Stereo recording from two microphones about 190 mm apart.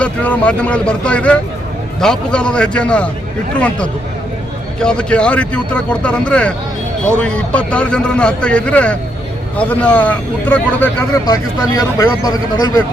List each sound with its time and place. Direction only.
0.0 s a man's voice: 5° left (ahead or behind)
4.8 s a man's voice: 5° left (ahead or behind); by 12.8 s 20° left (ahead or behind)